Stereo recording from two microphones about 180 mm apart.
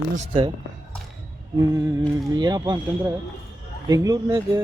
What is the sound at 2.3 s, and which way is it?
A man's voice, 20° right (ahead or behind).